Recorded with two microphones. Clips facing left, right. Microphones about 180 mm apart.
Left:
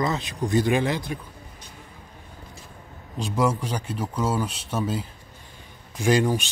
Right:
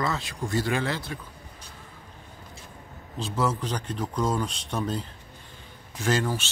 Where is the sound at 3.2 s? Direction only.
10° left (ahead or behind).